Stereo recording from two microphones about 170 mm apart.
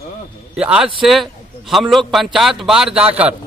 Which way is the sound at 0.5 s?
5° right (ahead or behind).